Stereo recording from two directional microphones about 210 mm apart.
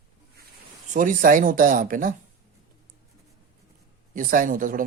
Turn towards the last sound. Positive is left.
turn(degrees=-40)  # may be behind; listen again after turning